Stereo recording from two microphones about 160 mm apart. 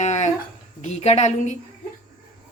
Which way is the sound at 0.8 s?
45° left (ahead or behind).